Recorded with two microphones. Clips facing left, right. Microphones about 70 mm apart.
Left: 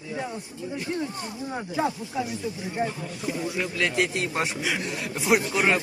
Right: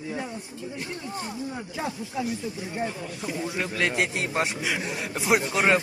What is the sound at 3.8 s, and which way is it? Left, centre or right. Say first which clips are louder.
A man's voice: left 1 dB; centre.